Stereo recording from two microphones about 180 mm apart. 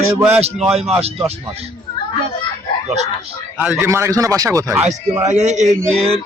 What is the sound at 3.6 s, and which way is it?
Speech, 10° right (ahead or behind).